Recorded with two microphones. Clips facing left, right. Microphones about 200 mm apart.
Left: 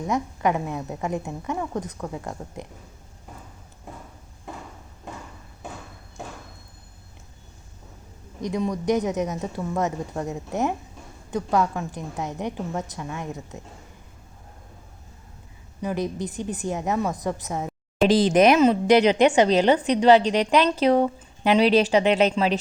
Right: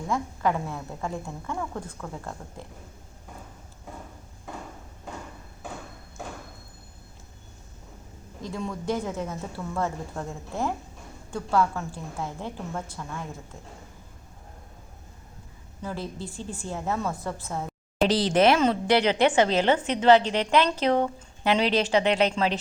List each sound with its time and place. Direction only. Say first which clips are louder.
0.1 s a woman's voice: left 2 dB; 20° left (ahead or behind)
8.4 s a woman's voice: left 7 dB; 15° left (ahead or behind)
15.8 s a woman's voice: left 7 dB; 15° left (ahead or behind)